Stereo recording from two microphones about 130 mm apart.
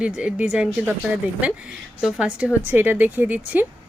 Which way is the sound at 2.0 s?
5° right (ahead or behind).